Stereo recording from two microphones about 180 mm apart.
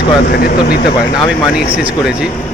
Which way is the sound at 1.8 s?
5° right (ahead or behind).